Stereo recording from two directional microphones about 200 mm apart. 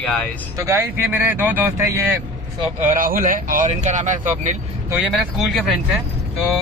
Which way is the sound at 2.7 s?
40° right (ahead or behind).